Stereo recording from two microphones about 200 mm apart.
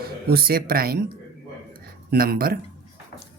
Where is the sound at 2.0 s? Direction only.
50° right (ahead or behind).